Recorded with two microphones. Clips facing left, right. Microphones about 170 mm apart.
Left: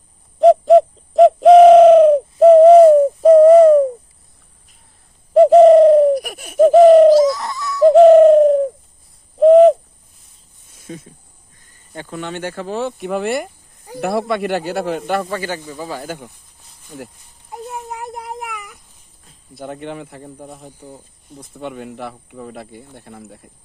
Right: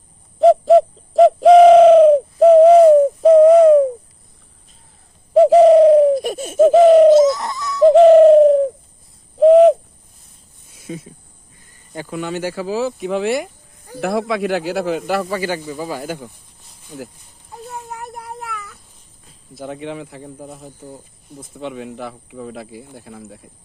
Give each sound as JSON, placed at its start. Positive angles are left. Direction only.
{"t": 0.3, "sound": "bird", "side_deg": 0}
{"t": 5.3, "sound": "bird", "side_deg": 0}
{"t": 6.1, "sound": "laughter", "side_deg": -25}
{"t": 6.6, "sound": "laughter", "side_deg": 0}
{"t": 7.1, "sound": "a sound", "side_deg": -20}
{"t": 7.8, "sound": "bird", "side_deg": 0}
{"t": 9.4, "sound": "owl", "side_deg": 0}
{"t": 10.8, "sound": "a sound", "side_deg": -5}
{"t": 11.9, "sound": "speech", "side_deg": -5}
{"t": 17.5, "sound": "a sound", "side_deg": 15}
{"t": 19.3, "sound": "speech", "side_deg": 0}
{"t": 20.8, "sound": "speech", "side_deg": -10}
{"t": 21.5, "sound": "speech", "side_deg": 0}